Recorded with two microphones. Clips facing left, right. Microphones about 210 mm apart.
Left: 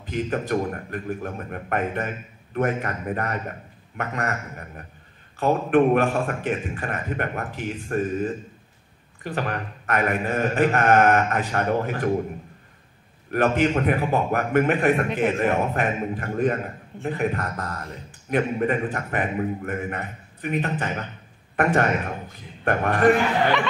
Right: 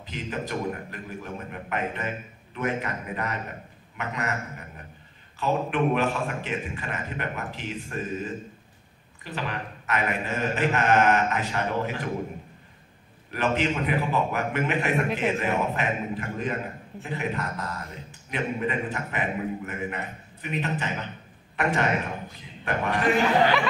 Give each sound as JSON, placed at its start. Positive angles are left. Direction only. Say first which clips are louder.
{"t": 0.0, "sound": "a man's voice", "louder": "left 6 dB", "side_deg": 50}
{"t": 5.4, "sound": "a man's voice", "louder": "left 6 dB", "side_deg": 50}
{"t": 13.3, "sound": "a man's voice", "louder": "left 5 dB", "side_deg": 50}